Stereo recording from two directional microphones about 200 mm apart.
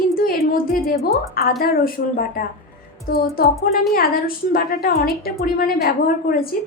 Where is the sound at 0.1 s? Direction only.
45° left (ahead or behind).